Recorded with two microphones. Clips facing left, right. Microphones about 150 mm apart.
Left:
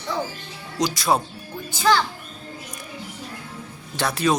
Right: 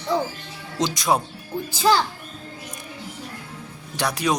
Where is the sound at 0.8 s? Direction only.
20° right (ahead or behind).